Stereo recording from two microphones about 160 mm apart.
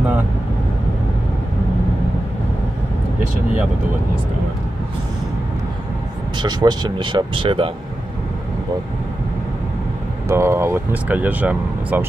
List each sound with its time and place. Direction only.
6.3 s speech: 25° right (ahead or behind)
10.2 s speech: 15° right (ahead or behind)